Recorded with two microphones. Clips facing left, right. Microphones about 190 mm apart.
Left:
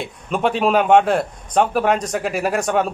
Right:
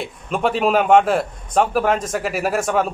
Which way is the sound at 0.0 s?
Centre (ahead or behind).